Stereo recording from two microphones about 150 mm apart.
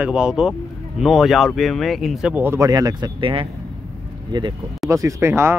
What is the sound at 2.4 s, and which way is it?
Speech, 20° right (ahead or behind).